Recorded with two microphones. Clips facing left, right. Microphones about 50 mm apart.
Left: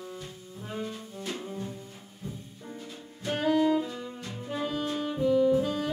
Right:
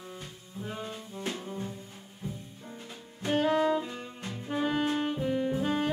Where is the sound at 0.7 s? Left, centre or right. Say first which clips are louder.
Left 2 dB; right.